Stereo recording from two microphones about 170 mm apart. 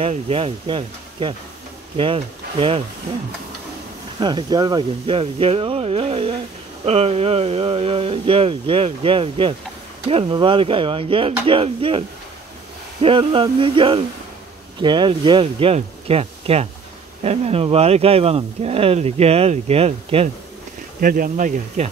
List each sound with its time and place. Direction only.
0.0 s speech: 35° right (ahead or behind)
4.2 s speech: 25° right (ahead or behind)
13.0 s speech: 30° right (ahead or behind)
21.0 s speech: 55° right (ahead or behind)